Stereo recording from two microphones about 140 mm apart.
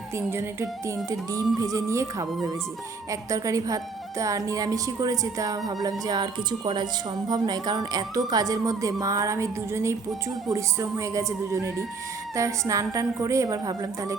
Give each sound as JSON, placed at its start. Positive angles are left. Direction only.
{"t": 0.2, "sound": "speech", "side_deg": -20}